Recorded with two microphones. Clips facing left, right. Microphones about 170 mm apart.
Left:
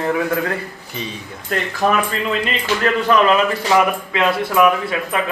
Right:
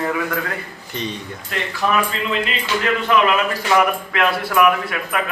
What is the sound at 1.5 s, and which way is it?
Speech, 45° left (ahead or behind).